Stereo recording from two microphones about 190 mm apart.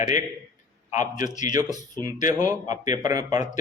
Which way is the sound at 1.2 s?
20° right (ahead or behind).